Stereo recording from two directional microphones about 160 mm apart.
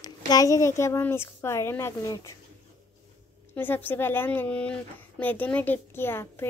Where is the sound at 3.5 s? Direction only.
10° left (ahead or behind).